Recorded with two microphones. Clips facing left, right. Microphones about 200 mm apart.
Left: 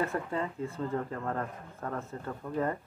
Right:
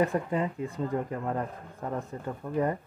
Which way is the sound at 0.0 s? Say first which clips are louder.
Right 5 dB; 15° right (ahead or behind).